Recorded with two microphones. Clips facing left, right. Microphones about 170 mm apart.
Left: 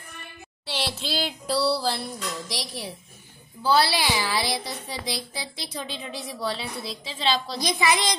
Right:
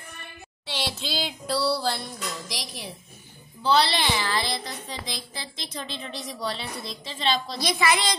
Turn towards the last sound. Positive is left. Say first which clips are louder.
# even
turn(degrees=15)  # may be behind; listen again after turning